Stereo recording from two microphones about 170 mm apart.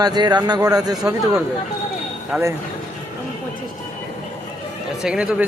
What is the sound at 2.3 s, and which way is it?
Speech, 5° right (ahead or behind).